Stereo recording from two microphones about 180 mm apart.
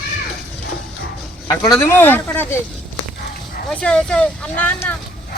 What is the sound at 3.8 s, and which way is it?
A man's voice, 5° left (ahead or behind).